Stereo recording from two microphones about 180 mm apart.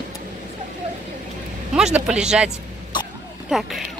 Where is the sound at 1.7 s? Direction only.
5° right (ahead or behind).